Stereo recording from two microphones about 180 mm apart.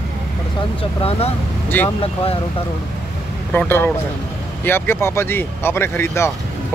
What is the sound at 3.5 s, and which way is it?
Speech, 10° left (ahead or behind).